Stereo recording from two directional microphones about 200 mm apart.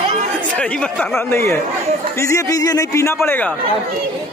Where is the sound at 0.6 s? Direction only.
5° left (ahead or behind).